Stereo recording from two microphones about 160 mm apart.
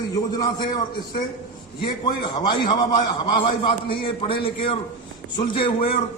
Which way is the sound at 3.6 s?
35° left (ahead or behind).